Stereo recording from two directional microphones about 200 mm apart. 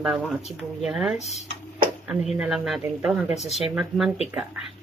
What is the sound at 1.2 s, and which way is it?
Speech, 35° left (ahead or behind).